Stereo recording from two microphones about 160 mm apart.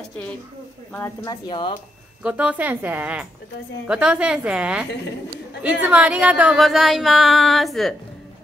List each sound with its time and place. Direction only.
1.2 s speech: 30° left (ahead or behind)
2.2 s a woman's voice: 5° right (ahead or behind)